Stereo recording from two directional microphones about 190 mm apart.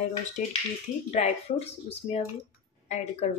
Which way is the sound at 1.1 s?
35° left (ahead or behind).